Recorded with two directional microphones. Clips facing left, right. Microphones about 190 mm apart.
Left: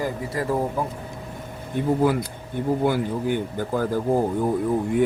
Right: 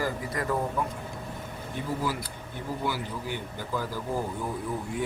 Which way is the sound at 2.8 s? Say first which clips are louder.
Left 10 dB; 50° left (ahead or behind).